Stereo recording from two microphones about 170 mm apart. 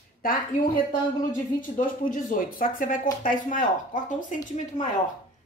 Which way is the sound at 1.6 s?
55° left (ahead or behind).